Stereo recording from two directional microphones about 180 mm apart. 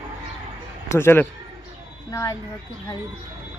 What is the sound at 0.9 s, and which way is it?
Speech, 15° left (ahead or behind).